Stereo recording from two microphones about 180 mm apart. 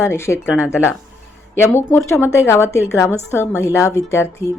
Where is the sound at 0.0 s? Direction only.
15° left (ahead or behind).